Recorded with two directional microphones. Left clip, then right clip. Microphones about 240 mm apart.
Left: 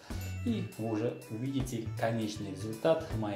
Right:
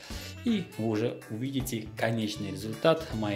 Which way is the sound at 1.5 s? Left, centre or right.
Right.